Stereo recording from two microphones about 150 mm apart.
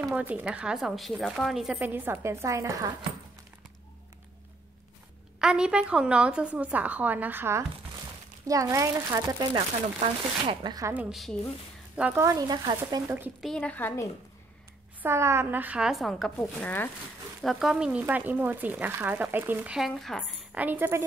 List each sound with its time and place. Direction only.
0.0 s speech: 10° right (ahead or behind)
5.4 s speech: 5° right (ahead or behind); by 9.7 s 25° right (ahead or behind)
9.9 s speech: 40° right (ahead or behind)
10.9 s speech: 5° right (ahead or behind)
12.0 s speech: 15° right (ahead or behind)
13.4 s a woman's voice: 5° left (ahead or behind)
15.0 s speech: 15° right (ahead or behind); by 16.9 s 10° left (ahead or behind)
17.4 s speech: centre (ahead or behind)
20.5 s speech: 10° right (ahead or behind)